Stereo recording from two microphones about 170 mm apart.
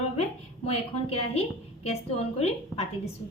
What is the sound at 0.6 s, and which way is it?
A woman's voice, 35° left (ahead or behind).